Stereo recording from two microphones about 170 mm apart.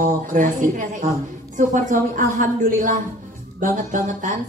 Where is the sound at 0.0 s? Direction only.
50° right (ahead or behind).